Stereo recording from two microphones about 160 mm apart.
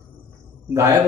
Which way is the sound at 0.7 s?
20° right (ahead or behind).